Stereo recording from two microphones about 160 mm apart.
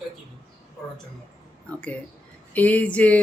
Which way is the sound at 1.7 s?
10° left (ahead or behind).